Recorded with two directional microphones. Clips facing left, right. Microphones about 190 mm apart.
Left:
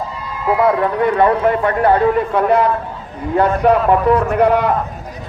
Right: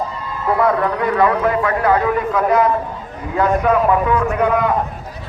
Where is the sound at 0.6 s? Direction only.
30° left (ahead or behind).